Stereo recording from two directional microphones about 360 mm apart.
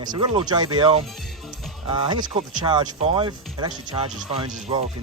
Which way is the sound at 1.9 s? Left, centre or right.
Centre.